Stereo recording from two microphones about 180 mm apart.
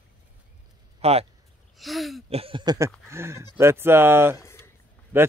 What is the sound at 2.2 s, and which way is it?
Speech, 30° right (ahead or behind).